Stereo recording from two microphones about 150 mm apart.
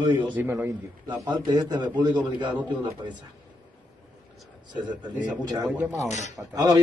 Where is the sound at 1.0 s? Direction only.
30° right (ahead or behind).